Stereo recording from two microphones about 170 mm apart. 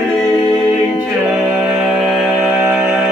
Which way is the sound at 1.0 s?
5° right (ahead or behind).